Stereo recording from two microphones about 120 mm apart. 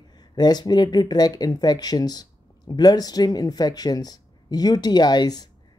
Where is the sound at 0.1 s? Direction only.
35° left (ahead or behind).